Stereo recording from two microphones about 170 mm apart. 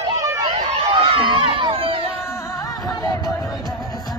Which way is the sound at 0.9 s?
30° right (ahead or behind).